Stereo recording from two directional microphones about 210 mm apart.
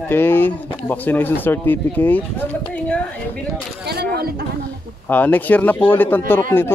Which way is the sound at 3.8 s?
50° right (ahead or behind).